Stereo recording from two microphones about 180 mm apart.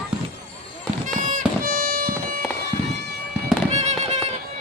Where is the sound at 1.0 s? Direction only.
45° right (ahead or behind).